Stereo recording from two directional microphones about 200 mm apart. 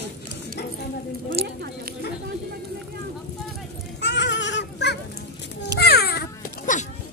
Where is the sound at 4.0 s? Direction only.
60° left (ahead or behind).